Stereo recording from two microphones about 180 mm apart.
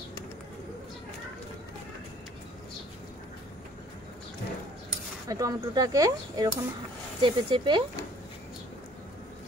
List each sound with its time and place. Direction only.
5.3 s speech: 20° right (ahead or behind)